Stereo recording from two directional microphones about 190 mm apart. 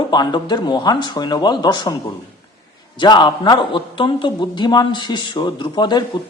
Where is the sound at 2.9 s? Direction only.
25° left (ahead or behind).